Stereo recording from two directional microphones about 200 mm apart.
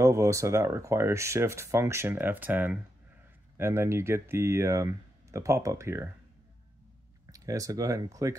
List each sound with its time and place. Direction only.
0.0 s speech: 15° right (ahead or behind)
7.2 s speech: 15° right (ahead or behind)